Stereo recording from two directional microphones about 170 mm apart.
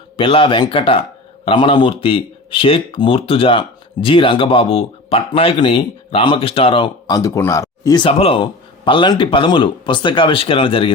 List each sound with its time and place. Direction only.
0.2 s speech: 30° left (ahead or behind)
7.2 s speech: 20° left (ahead or behind)